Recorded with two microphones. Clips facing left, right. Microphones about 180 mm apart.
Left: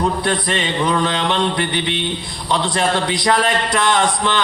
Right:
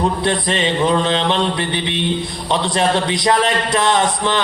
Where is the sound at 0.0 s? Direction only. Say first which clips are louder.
Right 1 dB; 25° right (ahead or behind).